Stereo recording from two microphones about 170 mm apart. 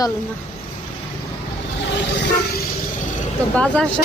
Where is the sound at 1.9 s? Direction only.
90° left.